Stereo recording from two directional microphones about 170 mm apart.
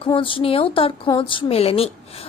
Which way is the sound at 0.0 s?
30° left (ahead or behind).